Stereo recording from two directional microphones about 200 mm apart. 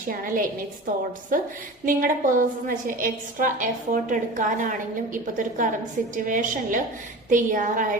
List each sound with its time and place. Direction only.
0.0 s a woman's voice: 45° right (ahead or behind)